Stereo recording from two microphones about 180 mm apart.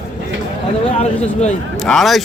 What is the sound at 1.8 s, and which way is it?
Speech, centre (ahead or behind).